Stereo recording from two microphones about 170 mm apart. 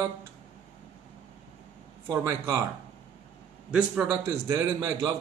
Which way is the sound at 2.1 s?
15° right (ahead or behind).